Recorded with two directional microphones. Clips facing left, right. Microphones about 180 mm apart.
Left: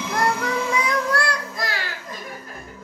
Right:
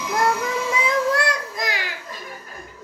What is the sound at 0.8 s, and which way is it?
Child singing, 20° right (ahead or behind).